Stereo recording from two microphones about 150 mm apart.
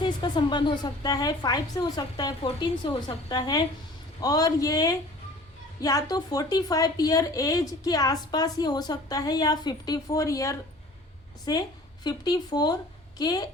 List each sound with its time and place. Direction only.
0.0 s a woman's voice: 30° left (ahead or behind)